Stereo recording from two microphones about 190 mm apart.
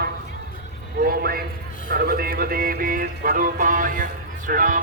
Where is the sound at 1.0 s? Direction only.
50° right (ahead or behind).